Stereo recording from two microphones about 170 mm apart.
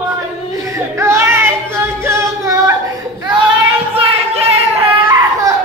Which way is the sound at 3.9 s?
35° right (ahead or behind).